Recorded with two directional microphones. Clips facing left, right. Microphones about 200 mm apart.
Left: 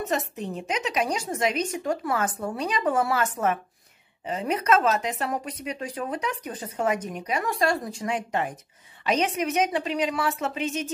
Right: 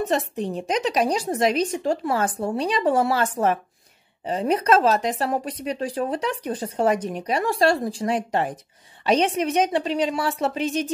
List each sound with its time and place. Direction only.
0.0 s speech: 30° right (ahead or behind)